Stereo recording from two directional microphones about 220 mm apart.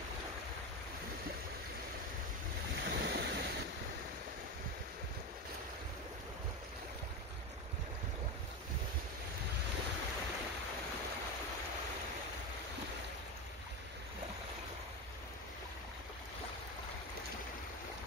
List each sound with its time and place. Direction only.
2.8 s waves: 50° right (ahead or behind)